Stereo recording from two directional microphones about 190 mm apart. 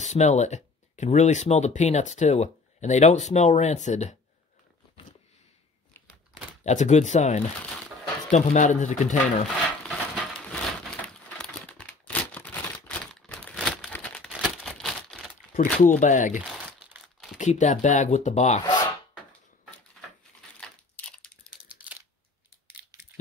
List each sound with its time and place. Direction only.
0.0 s speech: 35° left (ahead or behind)
6.6 s speech: 40° left (ahead or behind)
11.2 s a sound: 10° left (ahead or behind)
15.5 s speech: 50° left (ahead or behind)
16.3 s crumpling: 5° right (ahead or behind)
17.4 s speech: 40° left (ahead or behind)
18.7 s rub: 25° left (ahead or behind)
20.6 s a sound: 5° left (ahead or behind)
21.6 s a sound: 10° right (ahead or behind)